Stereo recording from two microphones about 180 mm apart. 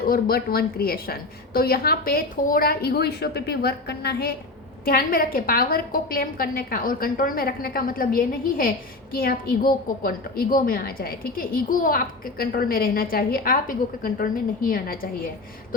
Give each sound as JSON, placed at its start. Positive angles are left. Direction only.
{"t": 0.0, "sound": "a woman's voice", "side_deg": 55}